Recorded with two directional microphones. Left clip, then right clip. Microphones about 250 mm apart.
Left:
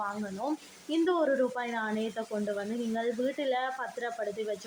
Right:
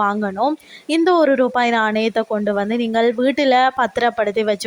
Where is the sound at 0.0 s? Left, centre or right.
Right.